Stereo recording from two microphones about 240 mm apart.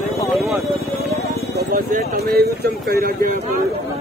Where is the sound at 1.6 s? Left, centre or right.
Right.